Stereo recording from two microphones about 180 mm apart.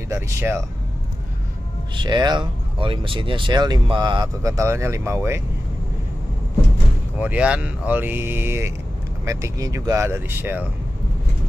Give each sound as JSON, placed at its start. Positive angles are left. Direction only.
{"t": 0.1, "sound": "speech", "side_deg": -15}
{"t": 2.0, "sound": "speech", "side_deg": -25}
{"t": 7.2, "sound": "speech", "side_deg": -5}